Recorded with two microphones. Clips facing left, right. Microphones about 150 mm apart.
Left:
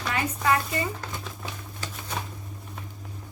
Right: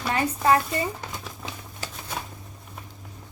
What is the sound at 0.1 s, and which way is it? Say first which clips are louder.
Speech: right 4 dB; 35° right (ahead or behind).